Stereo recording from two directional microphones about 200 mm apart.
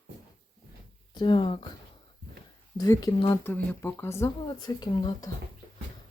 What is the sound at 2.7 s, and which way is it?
Speech, 15° left (ahead or behind).